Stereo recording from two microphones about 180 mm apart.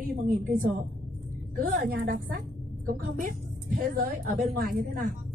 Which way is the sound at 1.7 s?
55° right (ahead or behind).